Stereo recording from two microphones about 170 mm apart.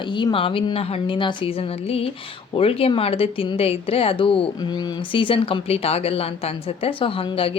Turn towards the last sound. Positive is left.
turn(degrees=35)  # may be behind; listen again after turning